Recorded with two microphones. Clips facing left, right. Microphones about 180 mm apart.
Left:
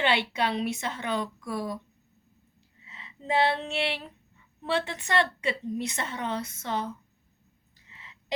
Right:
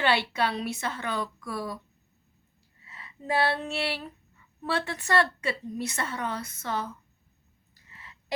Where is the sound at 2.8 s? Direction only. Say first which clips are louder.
Right 1 dB; 20° left (ahead or behind).